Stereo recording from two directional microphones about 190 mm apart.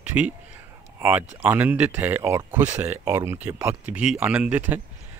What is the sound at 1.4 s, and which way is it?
Speech, 10° right (ahead or behind).